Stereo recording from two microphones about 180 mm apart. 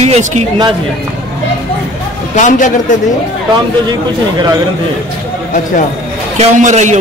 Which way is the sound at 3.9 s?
20° right (ahead or behind).